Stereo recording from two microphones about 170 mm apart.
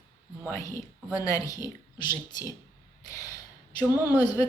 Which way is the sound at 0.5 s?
15° left (ahead or behind).